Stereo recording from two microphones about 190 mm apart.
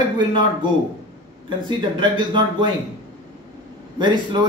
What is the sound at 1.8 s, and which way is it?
Speech, 25° right (ahead or behind).